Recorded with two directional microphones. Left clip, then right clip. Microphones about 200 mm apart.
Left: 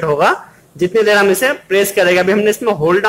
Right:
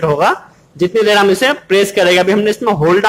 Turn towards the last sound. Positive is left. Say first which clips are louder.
# right 2 dB
turn(degrees=0)  # may be behind; listen again after turning